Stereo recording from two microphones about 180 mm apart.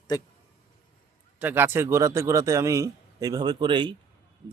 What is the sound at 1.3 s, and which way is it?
Speech, 10° right (ahead or behind).